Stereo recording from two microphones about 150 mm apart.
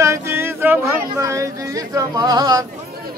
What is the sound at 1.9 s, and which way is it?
Yodeling, 25° right (ahead or behind).